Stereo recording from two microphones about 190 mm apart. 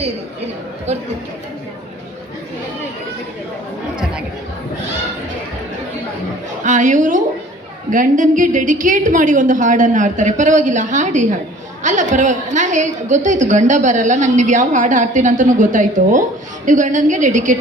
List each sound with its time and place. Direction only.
0.9 s a woman's voice: 35° right (ahead or behind)
6.7 s a woman's voice: 40° right (ahead or behind)